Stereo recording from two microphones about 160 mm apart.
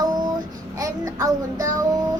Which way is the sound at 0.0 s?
25° right (ahead or behind).